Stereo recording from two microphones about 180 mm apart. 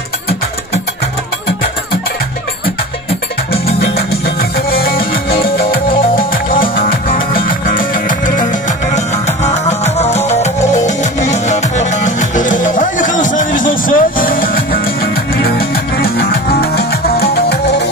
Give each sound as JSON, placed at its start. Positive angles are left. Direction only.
{"t": 4.4, "sound": "music", "side_deg": 55}
{"t": 8.9, "sound": "music", "side_deg": 40}